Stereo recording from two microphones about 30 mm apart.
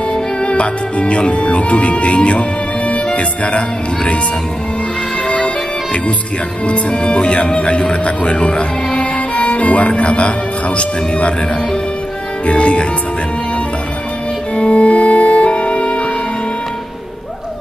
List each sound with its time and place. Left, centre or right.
0.1 s music: left
2.9 s speech: left
6.7 s speech: left
12.4 s speech: left
14.5 s music: left